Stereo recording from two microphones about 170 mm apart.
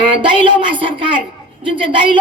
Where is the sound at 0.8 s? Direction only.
30° right (ahead or behind).